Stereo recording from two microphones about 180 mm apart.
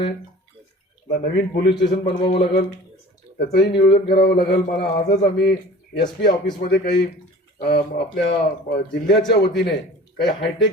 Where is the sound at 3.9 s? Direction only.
60° left (ahead or behind).